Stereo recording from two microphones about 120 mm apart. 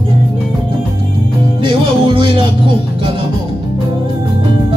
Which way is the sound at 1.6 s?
45° right (ahead or behind).